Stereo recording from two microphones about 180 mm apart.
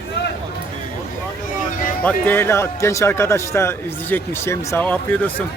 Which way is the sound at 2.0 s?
10° left (ahead or behind).